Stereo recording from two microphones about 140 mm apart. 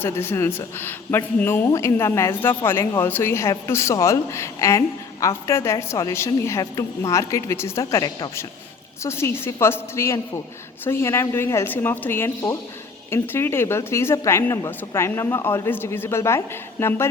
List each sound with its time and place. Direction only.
0.0 s a woman's voice: 15° left (ahead or behind)